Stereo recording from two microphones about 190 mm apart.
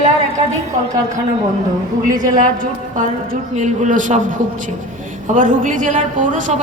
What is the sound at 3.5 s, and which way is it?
Speech, 40° right (ahead or behind).